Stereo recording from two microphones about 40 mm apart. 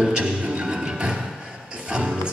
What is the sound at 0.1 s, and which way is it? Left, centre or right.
Music, right.